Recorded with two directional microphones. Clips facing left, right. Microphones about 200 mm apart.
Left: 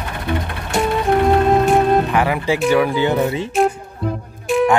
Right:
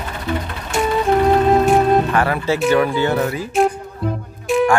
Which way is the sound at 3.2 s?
25° left (ahead or behind).